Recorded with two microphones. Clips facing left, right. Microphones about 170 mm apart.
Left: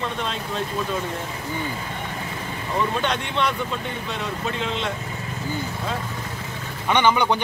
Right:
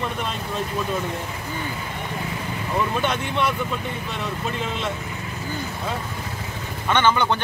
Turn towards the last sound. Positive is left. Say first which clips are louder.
# left 1 dB
turn(degrees=15)  # may be behind; listen again after turning